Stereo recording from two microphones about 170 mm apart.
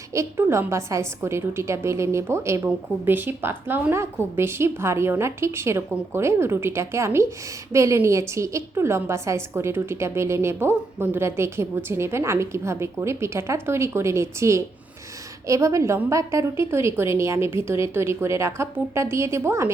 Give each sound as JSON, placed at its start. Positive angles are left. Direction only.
{"t": 0.1, "sound": "a woman's voice", "side_deg": -15}